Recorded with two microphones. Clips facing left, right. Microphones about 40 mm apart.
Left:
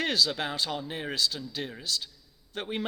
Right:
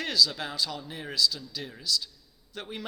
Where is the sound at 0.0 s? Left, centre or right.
Left.